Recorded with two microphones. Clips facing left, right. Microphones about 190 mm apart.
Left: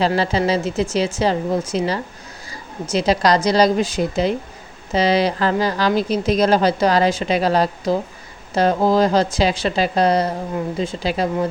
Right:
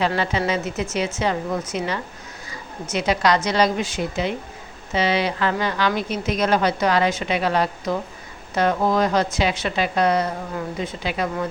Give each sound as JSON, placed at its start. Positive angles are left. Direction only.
{"t": 0.0, "sound": "a woman's voice", "side_deg": 35}